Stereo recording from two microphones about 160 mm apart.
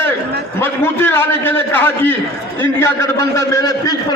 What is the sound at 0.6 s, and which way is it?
A man's voice, 15° left (ahead or behind).